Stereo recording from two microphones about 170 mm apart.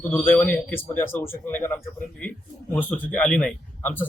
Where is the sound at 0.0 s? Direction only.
10° left (ahead or behind).